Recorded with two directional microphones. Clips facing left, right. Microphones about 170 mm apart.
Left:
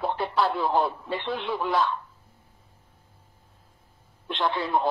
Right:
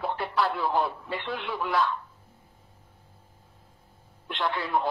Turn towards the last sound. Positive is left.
turn(degrees=25)  # may be behind; listen again after turning